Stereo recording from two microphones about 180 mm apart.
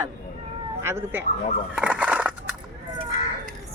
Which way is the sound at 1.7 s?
5° right (ahead or behind).